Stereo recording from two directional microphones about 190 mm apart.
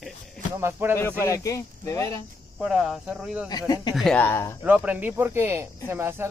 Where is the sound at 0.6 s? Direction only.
10° right (ahead or behind).